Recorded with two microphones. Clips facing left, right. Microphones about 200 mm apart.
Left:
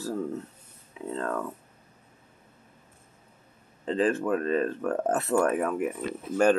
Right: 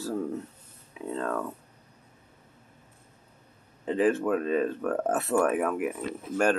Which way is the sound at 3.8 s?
15° right (ahead or behind).